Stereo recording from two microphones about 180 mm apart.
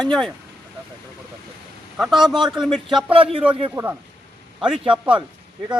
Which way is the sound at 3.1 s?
30° right (ahead or behind).